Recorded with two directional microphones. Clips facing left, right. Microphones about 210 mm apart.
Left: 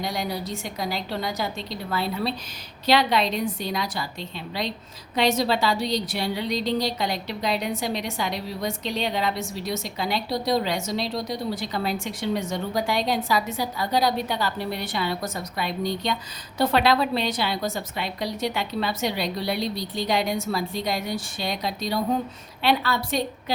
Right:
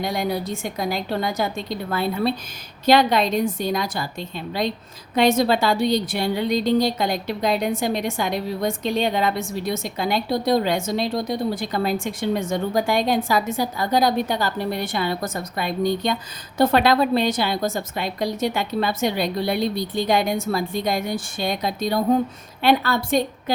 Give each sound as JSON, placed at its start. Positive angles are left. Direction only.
{"t": 0.0, "sound": "a woman's voice", "side_deg": -55}